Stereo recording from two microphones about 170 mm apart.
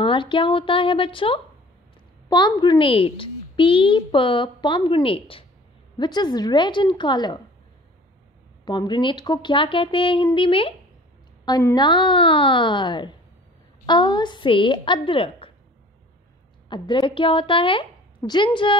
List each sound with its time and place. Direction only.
0.0 s a woman's voice: 30° left (ahead or behind)
8.6 s a woman's voice: 25° left (ahead or behind)
11.7 s a woman's voice: 30° left (ahead or behind)
16.6 s a woman's voice: 25° left (ahead or behind)